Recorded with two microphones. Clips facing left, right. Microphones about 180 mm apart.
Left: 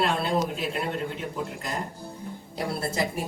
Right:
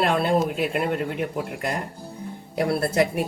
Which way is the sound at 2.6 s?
65° right (ahead or behind).